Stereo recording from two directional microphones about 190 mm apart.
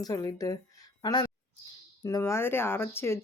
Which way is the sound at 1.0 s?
20° left (ahead or behind).